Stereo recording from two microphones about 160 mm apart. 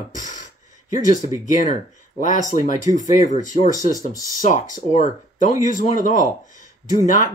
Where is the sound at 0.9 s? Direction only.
55° left (ahead or behind).